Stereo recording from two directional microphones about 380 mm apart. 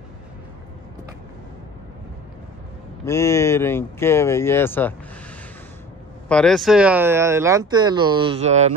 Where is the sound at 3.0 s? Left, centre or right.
Centre.